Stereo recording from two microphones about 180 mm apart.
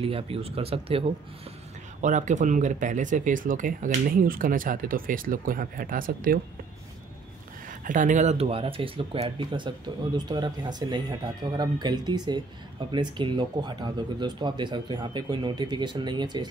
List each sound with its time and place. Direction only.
0.0 s speech: 30° right (ahead or behind); by 6.4 s 50° right (ahead or behind)
7.8 s speech: 45° right (ahead or behind); by 16.4 s 25° right (ahead or behind)